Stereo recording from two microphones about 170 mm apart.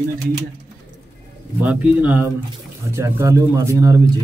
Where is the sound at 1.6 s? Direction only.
10° right (ahead or behind).